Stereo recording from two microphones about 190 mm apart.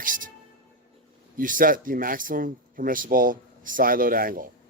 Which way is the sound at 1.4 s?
45° right (ahead or behind).